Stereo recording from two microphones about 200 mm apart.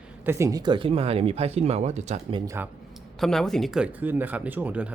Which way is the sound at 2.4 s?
15° right (ahead or behind).